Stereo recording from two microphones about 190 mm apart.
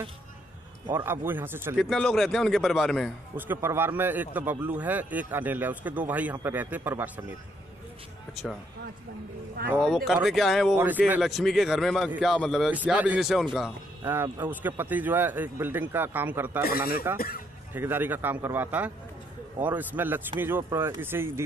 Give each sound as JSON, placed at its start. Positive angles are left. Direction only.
{"t": 0.8, "sound": "a man's voice", "side_deg": -15}
{"t": 1.8, "sound": "a man's voice", "side_deg": 5}
{"t": 3.3, "sound": "a man's voice", "side_deg": -10}
{"t": 9.7, "sound": "a man's voice", "side_deg": 0}
{"t": 14.0, "sound": "a man's voice", "side_deg": -15}
{"t": 16.6, "sound": "a man's voice", "side_deg": 50}
{"t": 17.7, "sound": "a man's voice", "side_deg": -10}